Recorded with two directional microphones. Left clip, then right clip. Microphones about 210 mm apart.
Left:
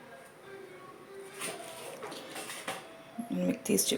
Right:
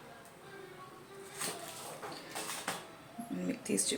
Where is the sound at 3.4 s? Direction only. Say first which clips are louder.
Left 6 dB; 25° left (ahead or behind).